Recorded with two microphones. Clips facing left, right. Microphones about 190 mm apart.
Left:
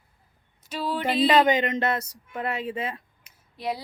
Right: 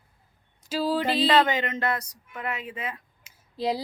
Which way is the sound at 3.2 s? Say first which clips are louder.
Right 4 dB; 30° right (ahead or behind).